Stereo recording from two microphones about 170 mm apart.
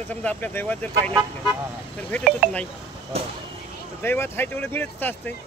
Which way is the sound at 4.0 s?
10° left (ahead or behind).